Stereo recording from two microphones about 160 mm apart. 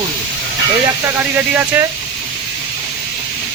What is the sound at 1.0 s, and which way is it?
Speech, 15° right (ahead or behind).